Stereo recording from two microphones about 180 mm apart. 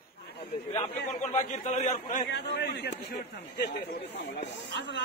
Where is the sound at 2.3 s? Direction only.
70° left (ahead or behind).